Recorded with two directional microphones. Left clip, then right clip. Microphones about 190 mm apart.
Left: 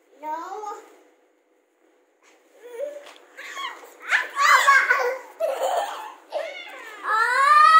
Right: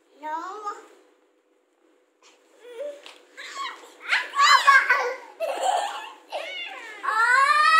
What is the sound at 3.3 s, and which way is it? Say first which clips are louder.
Dog: left 1 dB; 60° right (ahead or behind).